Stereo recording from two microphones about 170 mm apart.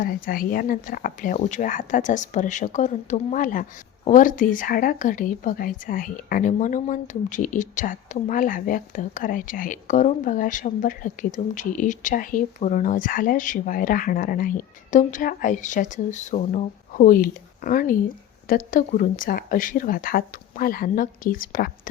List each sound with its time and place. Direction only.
0.0 s speech: 55° left (ahead or behind)